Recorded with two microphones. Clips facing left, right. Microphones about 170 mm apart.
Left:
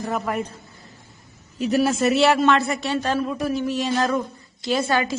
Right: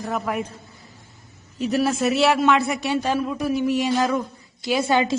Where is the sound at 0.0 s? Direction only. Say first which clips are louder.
Left 1 dB; centre (ahead or behind).